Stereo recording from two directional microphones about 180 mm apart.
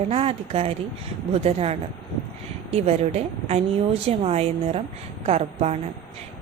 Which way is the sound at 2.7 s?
35° right (ahead or behind).